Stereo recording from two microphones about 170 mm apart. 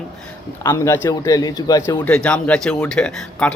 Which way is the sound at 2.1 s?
5° left (ahead or behind).